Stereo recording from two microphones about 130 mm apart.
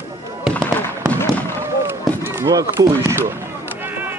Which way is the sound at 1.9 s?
15° right (ahead or behind).